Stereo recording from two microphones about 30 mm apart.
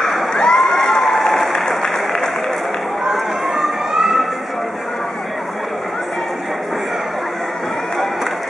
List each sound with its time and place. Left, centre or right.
0.3 s a sound: left; by 1.5 s centre
1.7 s applause: centre
3.1 s run: centre